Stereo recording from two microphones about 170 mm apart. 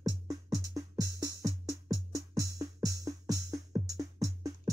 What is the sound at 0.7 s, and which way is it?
Music, 20° right (ahead or behind).